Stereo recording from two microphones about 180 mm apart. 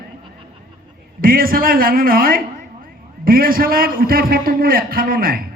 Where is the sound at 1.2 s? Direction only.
50° right (ahead or behind).